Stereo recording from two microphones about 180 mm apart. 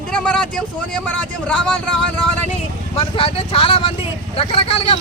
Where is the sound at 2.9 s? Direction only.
30° left (ahead or behind).